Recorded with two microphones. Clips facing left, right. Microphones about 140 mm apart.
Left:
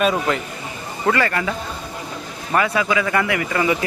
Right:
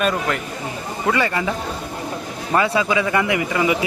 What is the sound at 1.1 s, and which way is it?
Speech, 15° right (ahead or behind).